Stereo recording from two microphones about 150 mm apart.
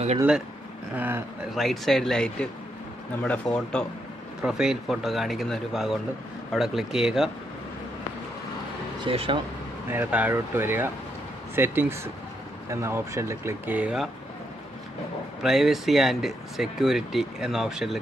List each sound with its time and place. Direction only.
0.9 s speech: 15° right (ahead or behind)
1.5 s speech: centre (ahead or behind)
3.5 s speech: 5° left (ahead or behind)
4.4 s speech: 5° right (ahead or behind)
9.0 s speech: 35° right (ahead or behind)
9.8 s speech: 10° right (ahead or behind)
15.4 s speech: centre (ahead or behind)